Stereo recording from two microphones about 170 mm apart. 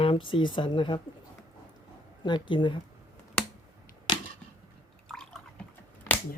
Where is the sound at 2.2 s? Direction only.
25° left (ahead or behind).